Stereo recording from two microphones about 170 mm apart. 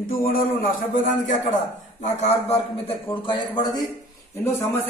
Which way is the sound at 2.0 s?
40° left (ahead or behind).